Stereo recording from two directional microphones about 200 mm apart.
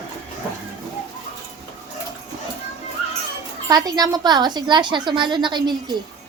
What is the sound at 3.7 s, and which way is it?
A woman's voice, 20° right (ahead or behind).